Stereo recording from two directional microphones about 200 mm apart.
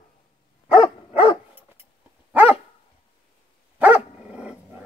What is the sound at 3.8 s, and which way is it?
Dog, 5° right (ahead or behind).